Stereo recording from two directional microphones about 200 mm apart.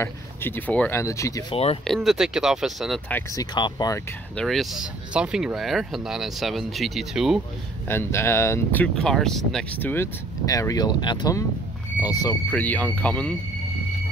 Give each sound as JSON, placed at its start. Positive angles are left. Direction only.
{"t": 0.0, "sound": "speech", "side_deg": 10}
{"t": 1.5, "sound": "speech", "side_deg": 30}
{"t": 2.0, "sound": "speech", "side_deg": -5}
{"t": 3.1, "sound": "speech", "side_deg": 15}
{"t": 4.4, "sound": "speech", "side_deg": 0}
{"t": 7.9, "sound": "speech", "side_deg": 10}